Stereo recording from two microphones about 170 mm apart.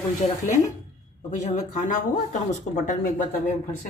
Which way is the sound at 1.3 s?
45° left (ahead or behind).